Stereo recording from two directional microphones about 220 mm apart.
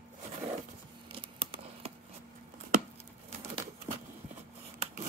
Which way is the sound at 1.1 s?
25° right (ahead or behind).